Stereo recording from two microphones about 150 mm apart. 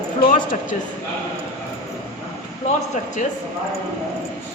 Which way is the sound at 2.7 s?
55° left (ahead or behind).